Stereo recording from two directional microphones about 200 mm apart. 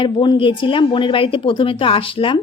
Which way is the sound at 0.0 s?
25° left (ahead or behind).